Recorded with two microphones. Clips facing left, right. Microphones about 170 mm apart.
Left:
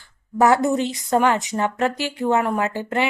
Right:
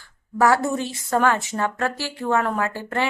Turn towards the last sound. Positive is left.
turn(degrees=15)  # may be behind; listen again after turning